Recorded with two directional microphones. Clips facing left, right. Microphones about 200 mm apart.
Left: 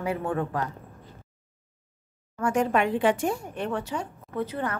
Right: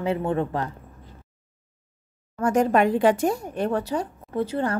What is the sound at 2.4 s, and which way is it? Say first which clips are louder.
A woman's voice: right 4 dB; 40° right (ahead or behind).